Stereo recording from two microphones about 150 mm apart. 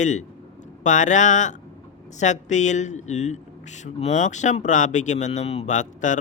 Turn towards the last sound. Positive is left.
turn(degrees=55)  # may be behind; listen again after turning